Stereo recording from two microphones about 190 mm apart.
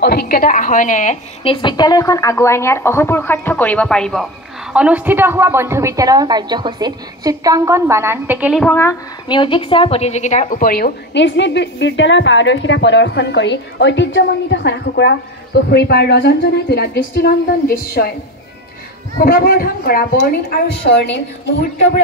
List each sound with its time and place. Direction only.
0.0 s a woman's voice: 55° left (ahead or behind); by 8.6 s 5° right (ahead or behind)
8.6 s a woman's voice: 10° left (ahead or behind)
9.3 s a woman's voice: 25° left (ahead or behind); by 18.1 s 50° left (ahead or behind)
19.1 s a woman's voice: 55° left (ahead or behind)